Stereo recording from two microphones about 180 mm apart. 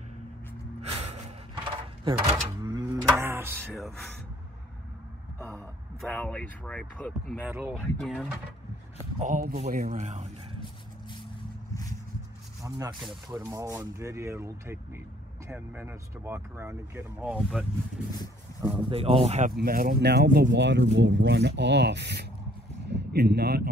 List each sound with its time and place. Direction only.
0.8 s music: 35° right (ahead or behind)
1.5 s a sound: 25° right (ahead or behind)
2.6 s cattle: 20° right (ahead or behind)
3.7 s speech: centre (ahead or behind)
6.0 s speech: 5° left (ahead or behind)
7.3 s speech: 10° right (ahead or behind)
7.7 s speech: 5° left (ahead or behind)
9.2 s speech: 45° right (ahead or behind)
12.6 s speech: 20° right (ahead or behind); by 17.6 s centre (ahead or behind)
18.7 s speech: 30° right (ahead or behind)
19.5 s speech: 55° right (ahead or behind)